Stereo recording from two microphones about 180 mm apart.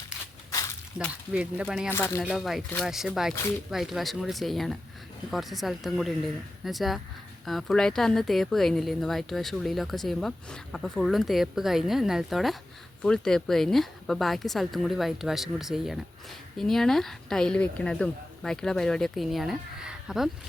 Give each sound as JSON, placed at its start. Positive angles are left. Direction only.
{"t": 0.5, "sound": "a sound", "side_deg": 20}
{"t": 1.0, "sound": "speech", "side_deg": -5}
{"t": 1.9, "sound": "speech", "side_deg": 15}
{"t": 2.2, "sound": "speech", "side_deg": 0}